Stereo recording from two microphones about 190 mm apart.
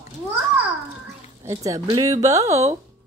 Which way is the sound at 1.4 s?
15° right (ahead or behind).